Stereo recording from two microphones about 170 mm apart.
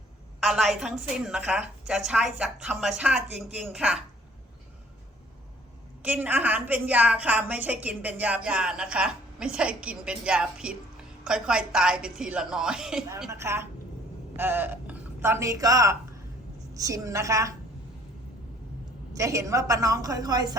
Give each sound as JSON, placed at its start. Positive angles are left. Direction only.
{"t": 0.3, "sound": "speech", "side_deg": 0}
{"t": 6.0, "sound": "a woman's voice", "side_deg": -10}
{"t": 13.3, "sound": "a woman's voice", "side_deg": -15}
{"t": 19.1, "sound": "a woman's voice", "side_deg": -20}